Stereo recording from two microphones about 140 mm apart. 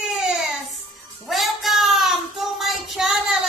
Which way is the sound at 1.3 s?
Centre (ahead or behind).